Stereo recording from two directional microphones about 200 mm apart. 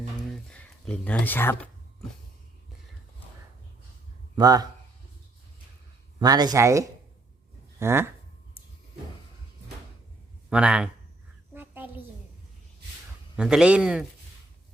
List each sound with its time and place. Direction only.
0.2 s music: 5° left (ahead or behind)
4.4 s speech: 20° right (ahead or behind)
6.1 s speech: 20° right (ahead or behind)
10.5 s speech: 5° right (ahead or behind)
11.5 s a sound: 10° right (ahead or behind)
13.3 s speech: 5° right (ahead or behind)